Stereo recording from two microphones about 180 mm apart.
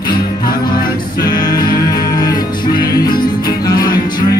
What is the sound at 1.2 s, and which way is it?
Music, 20° left (ahead or behind).